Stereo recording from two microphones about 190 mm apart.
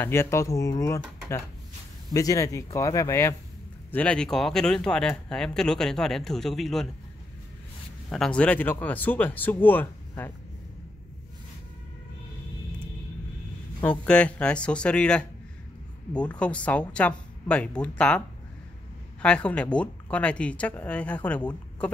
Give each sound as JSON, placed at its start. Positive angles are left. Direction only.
{"t": 0.0, "sound": "speech", "side_deg": 15}
{"t": 8.1, "sound": "speech", "side_deg": 5}
{"t": 13.8, "sound": "speech", "side_deg": 5}
{"t": 19.2, "sound": "speech", "side_deg": 5}